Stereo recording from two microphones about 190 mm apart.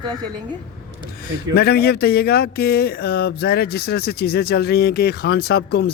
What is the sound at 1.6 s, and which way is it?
Speech, 55° left (ahead or behind).